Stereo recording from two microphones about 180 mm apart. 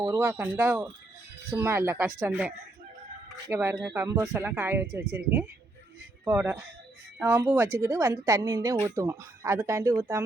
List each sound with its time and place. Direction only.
0.0 s speech: 15° right (ahead or behind)